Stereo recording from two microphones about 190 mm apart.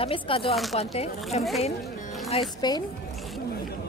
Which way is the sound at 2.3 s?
25° left (ahead or behind).